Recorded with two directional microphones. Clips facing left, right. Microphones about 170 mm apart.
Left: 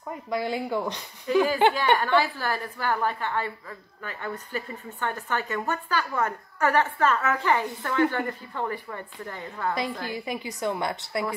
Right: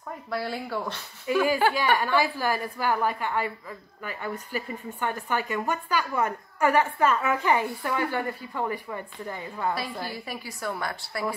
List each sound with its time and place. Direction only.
0.3 s speech: 15° left (ahead or behind)
1.3 s a woman's voice: 15° right (ahead or behind)
1.6 s a woman's voice: 25° left (ahead or behind)
2.0 s a woman's voice: 10° right (ahead or behind)
10.0 s a woman's voice: 20° left (ahead or behind)